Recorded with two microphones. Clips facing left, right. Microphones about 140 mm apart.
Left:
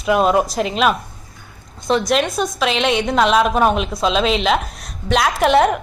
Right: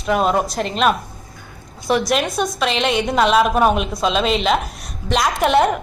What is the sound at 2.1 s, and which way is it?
A woman's voice, centre (ahead or behind).